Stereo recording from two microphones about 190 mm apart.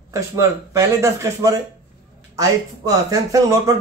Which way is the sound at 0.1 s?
15° right (ahead or behind).